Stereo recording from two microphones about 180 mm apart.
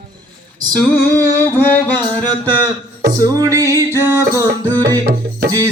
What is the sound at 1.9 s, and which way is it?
Music, 25° right (ahead or behind).